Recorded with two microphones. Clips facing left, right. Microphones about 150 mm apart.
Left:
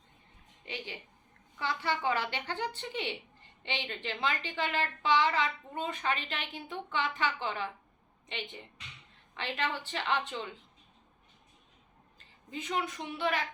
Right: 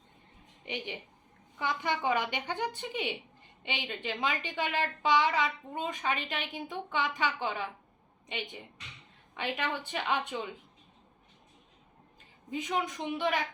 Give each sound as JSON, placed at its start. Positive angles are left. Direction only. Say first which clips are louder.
{"t": 0.6, "sound": "a woman's voice", "louder": "right 4 dB", "side_deg": -20}
{"t": 9.3, "sound": "a woman's voice", "louder": "right 1 dB", "side_deg": -15}
{"t": 12.5, "sound": "a woman's voice", "louder": "right 2 dB", "side_deg": -10}